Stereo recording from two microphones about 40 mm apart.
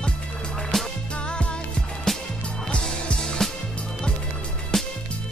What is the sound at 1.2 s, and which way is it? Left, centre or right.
Music, left.